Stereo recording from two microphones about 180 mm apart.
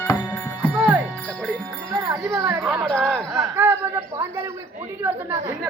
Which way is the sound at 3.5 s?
10° right (ahead or behind).